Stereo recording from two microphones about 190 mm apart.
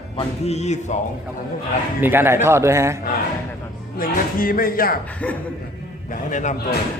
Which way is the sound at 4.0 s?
50° left (ahead or behind).